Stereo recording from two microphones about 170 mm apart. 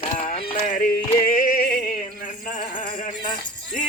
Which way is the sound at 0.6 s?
50° left (ahead or behind).